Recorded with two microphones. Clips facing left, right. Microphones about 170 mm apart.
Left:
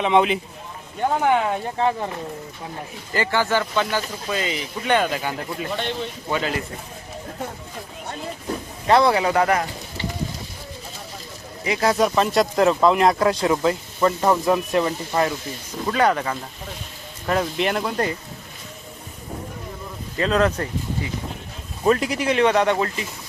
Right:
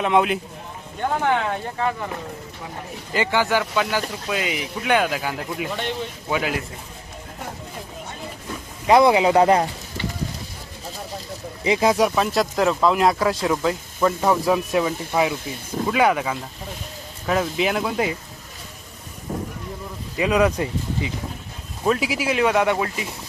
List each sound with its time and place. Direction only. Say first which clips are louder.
0.0 s speech: left 1 dB; centre (ahead or behind)
1.2 s speech: left 2 dB; 15° left (ahead or behind)
3.1 s speech: right 1 dB; 15° right (ahead or behind)
8.9 s speech: right 2 dB; 15° right (ahead or behind)
11.6 s speech: right 2 dB; 20° right (ahead or behind)
20.1 s speech: right 1 dB; 10° right (ahead or behind)